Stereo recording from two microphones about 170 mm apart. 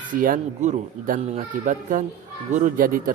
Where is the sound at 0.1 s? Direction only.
55° right (ahead or behind).